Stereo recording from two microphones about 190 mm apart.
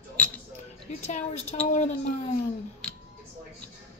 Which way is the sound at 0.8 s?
35° left (ahead or behind).